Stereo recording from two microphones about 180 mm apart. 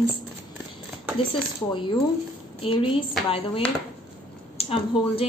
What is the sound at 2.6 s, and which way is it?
A woman's voice, 30° left (ahead or behind).